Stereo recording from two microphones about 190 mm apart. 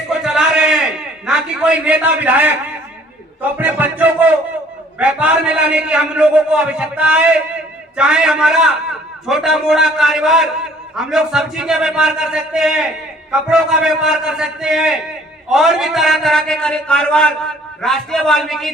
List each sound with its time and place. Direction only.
0.1 s a sound: centre (ahead or behind)
1.3 s a man's voice: 5° right (ahead or behind)
3.6 s a man's voice: 10° right (ahead or behind)